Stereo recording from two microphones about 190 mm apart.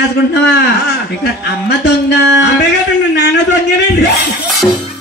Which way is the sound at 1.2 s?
60° left (ahead or behind).